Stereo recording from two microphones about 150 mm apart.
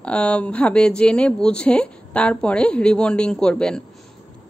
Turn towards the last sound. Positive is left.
turn(degrees=5)  # may be behind; listen again after turning